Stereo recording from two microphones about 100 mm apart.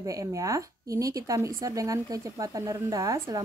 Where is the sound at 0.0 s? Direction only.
35° right (ahead or behind).